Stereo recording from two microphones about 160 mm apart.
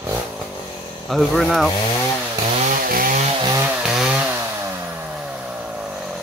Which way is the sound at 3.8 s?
5° right (ahead or behind).